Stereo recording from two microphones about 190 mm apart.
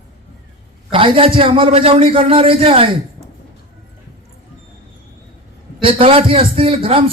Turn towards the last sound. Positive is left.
turn(degrees=-30)  # may be behind; listen again after turning